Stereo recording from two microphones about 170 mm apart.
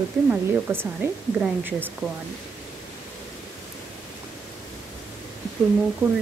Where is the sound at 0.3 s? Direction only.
15° right (ahead or behind).